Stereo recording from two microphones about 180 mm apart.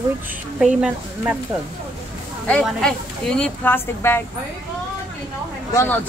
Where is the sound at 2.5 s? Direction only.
5° left (ahead or behind).